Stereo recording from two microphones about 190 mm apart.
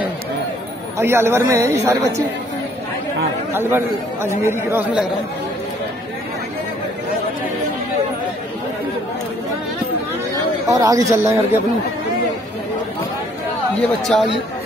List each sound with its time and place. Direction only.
0.9 s speech: 15° right (ahead or behind)
3.5 s speech: 10° right (ahead or behind)
10.7 s speech: 20° right (ahead or behind)
14.0 s speech: centre (ahead or behind)